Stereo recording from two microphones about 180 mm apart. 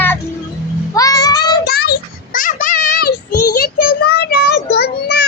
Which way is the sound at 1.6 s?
65° left (ahead or behind).